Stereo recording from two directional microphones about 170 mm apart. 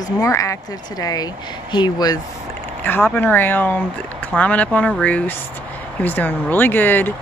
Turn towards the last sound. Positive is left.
turn(degrees=10)  # may be behind; listen again after turning